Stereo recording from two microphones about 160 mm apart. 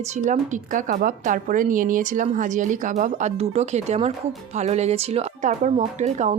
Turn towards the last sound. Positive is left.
turn(degrees=-45)  # may be behind; listen again after turning